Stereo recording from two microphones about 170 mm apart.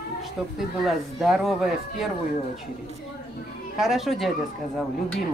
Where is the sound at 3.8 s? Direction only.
Centre (ahead or behind).